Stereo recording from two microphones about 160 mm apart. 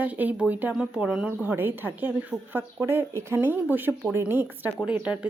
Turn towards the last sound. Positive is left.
turn(degrees=-5)  # may be behind; listen again after turning